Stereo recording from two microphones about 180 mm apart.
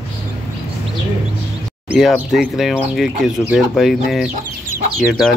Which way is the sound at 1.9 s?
Centre (ahead or behind).